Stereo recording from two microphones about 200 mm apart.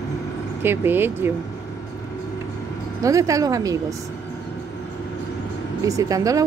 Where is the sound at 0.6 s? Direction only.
10° right (ahead or behind).